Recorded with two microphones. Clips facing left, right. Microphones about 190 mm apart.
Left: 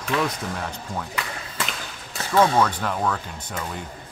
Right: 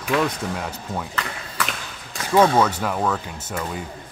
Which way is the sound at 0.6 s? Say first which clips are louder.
Right 2 dB; 5° right (ahead or behind).